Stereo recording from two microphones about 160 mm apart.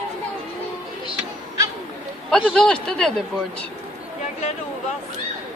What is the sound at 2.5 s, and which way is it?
Speech, 5° left (ahead or behind).